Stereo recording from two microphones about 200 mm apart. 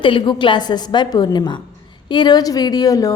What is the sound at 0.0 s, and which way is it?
A woman's voice, 25° left (ahead or behind).